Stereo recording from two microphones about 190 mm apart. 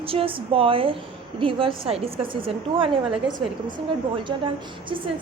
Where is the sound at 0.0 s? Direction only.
30° right (ahead or behind).